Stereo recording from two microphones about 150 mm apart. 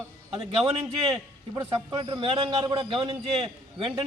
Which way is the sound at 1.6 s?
20° right (ahead or behind).